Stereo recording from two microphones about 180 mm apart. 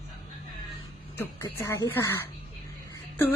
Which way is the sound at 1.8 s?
10° left (ahead or behind).